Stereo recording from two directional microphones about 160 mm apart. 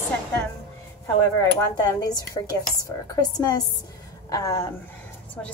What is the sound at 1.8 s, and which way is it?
Speech, 25° left (ahead or behind).